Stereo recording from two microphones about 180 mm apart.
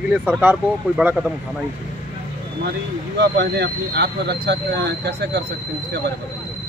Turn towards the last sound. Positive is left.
turn(degrees=-70)  # may be behind; listen again after turning